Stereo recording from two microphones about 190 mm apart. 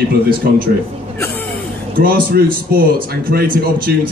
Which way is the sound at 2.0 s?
50° right (ahead or behind).